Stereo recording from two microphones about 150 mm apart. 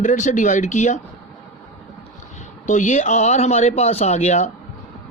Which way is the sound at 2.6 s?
55° left (ahead or behind).